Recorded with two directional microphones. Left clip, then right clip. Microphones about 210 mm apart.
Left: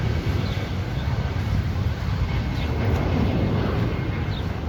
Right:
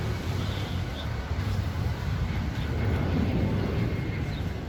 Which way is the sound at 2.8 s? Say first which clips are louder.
Left 5 dB; 25° left (ahead or behind).